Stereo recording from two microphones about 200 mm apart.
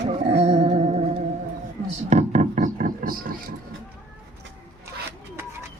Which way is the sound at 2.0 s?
35° right (ahead or behind).